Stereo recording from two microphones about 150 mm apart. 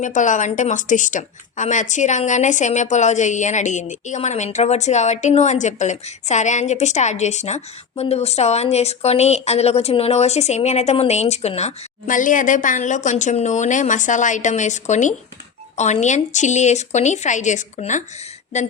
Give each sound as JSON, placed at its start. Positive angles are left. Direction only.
{"t": 0.0, "sound": "a woman's voice", "side_deg": 55}
{"t": 12.0, "sound": "a woman's voice", "side_deg": 60}